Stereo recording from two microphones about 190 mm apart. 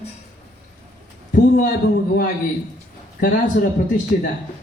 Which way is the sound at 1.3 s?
45° left (ahead or behind).